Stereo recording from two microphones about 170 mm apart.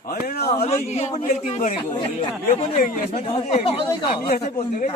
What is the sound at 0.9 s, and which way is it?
Speech, 40° left (ahead or behind).